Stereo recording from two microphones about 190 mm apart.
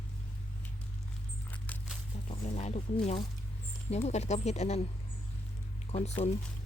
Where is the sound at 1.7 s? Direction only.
10° left (ahead or behind).